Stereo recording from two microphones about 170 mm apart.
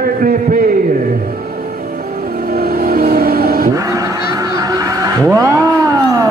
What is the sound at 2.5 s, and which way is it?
Vehicle, 60° right (ahead or behind).